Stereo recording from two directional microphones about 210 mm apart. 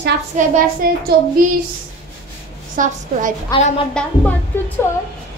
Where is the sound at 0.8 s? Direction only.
45° right (ahead or behind).